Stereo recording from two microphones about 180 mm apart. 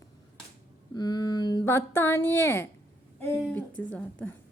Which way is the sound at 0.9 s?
20° left (ahead or behind).